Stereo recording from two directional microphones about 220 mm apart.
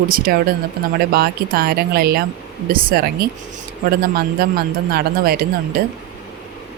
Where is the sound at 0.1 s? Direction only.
45° right (ahead or behind).